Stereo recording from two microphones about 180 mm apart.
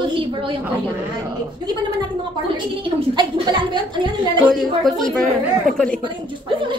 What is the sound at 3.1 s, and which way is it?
A woman's voice, 25° right (ahead or behind).